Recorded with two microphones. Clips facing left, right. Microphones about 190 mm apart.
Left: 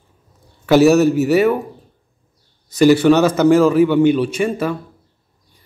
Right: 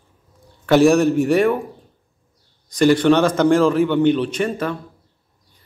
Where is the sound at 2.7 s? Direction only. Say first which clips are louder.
Left 3 dB; 5° left (ahead or behind).